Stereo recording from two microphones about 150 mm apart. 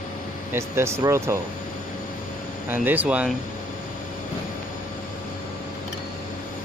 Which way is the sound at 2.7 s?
10° right (ahead or behind).